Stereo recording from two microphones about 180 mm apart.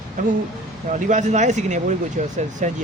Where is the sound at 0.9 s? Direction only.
40° right (ahead or behind).